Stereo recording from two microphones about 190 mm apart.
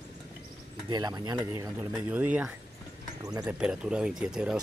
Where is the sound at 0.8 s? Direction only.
20° right (ahead or behind).